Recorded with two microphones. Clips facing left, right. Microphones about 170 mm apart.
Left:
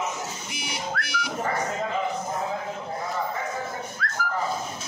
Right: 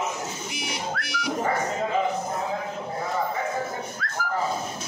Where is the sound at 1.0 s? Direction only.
65° left (ahead or behind).